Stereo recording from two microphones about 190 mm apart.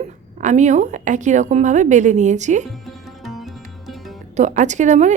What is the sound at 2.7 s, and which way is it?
Music, centre (ahead or behind).